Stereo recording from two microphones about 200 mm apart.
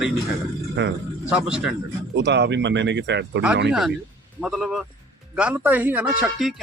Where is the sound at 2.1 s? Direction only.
60° right (ahead or behind).